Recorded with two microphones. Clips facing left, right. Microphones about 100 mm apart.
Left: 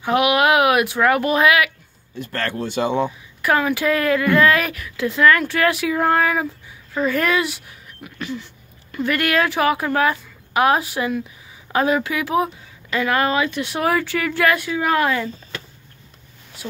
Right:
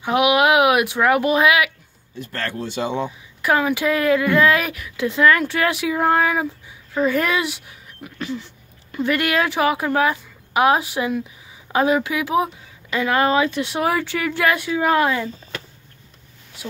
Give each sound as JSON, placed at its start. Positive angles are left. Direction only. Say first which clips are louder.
{"t": 0.0, "sound": "speech", "louder": "even", "side_deg": -15}
{"t": 2.1, "sound": "speech", "louder": "left 2 dB", "side_deg": 65}
{"t": 3.4, "sound": "speech", "louder": "even", "side_deg": -15}
{"t": 8.0, "sound": "a sound", "louder": "right 1 dB", "side_deg": -30}
{"t": 8.9, "sound": "speech", "louder": "even", "side_deg": -20}